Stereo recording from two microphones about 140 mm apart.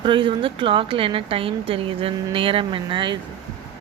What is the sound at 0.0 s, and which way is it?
A woman's voice, 35° right (ahead or behind).